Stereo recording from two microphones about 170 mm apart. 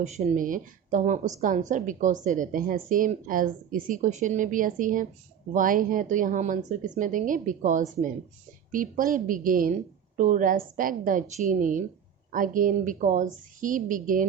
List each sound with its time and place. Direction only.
0.0 s a woman's voice: 45° right (ahead or behind)